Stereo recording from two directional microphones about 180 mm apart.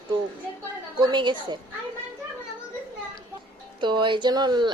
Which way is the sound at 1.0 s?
25° right (ahead or behind).